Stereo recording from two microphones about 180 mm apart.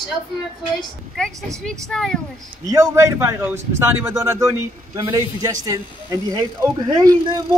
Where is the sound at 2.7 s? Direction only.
15° right (ahead or behind).